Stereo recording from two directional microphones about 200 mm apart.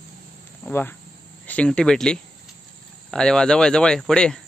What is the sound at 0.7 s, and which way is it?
Speech, 10° left (ahead or behind).